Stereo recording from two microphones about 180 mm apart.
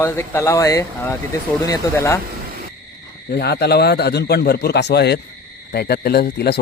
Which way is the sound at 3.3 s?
65° left (ahead or behind).